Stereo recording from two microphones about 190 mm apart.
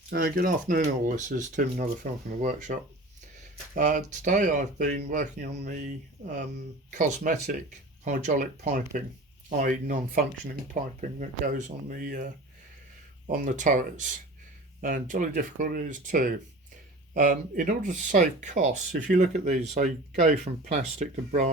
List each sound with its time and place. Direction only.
0.1 s speech: 55° right (ahead or behind); by 2.7 s 40° right (ahead or behind)
3.8 s speech: 40° right (ahead or behind)
5.4 s speech: 60° right (ahead or behind)
6.9 s speech: 40° right (ahead or behind)